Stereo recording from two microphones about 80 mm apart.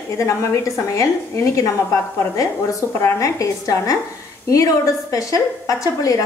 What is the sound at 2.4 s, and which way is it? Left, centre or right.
A woman's voice, left.